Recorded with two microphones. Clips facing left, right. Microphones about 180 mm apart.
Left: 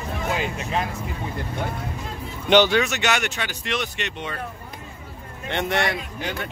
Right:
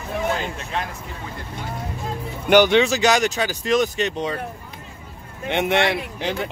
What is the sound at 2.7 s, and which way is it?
Speech, 30° right (ahead or behind).